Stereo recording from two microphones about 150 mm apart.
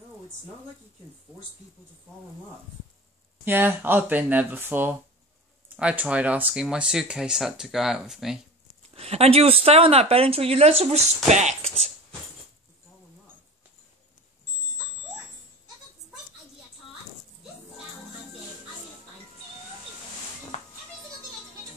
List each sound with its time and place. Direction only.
3.4 s speech: 15° right (ahead or behind)
8.9 s speech: 40° right (ahead or behind)
20.5 s music: 50° left (ahead or behind)